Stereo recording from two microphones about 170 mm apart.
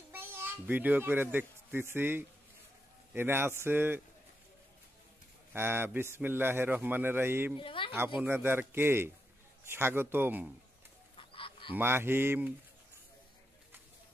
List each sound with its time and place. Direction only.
0.1 s a child's voice: 15° right (ahead or behind)
5.5 s a man's voice: 15° right (ahead or behind)
7.5 s speech: 30° left (ahead or behind)
8.2 s a man's voice: 15° right (ahead or behind)
11.1 s fowl: 30° left (ahead or behind)
11.7 s a man's voice: 15° right (ahead or behind)